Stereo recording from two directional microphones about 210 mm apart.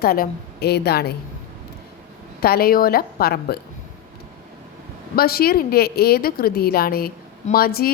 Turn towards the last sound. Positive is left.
turn(degrees=45)  # may be behind; listen again after turning